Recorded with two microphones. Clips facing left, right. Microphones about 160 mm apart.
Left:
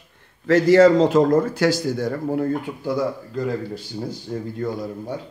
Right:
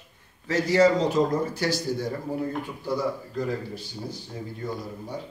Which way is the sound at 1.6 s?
90° left.